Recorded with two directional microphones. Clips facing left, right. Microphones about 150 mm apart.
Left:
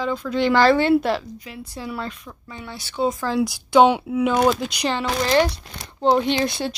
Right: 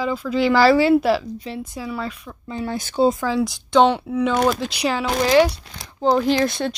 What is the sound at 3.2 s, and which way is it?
Speech, centre (ahead or behind).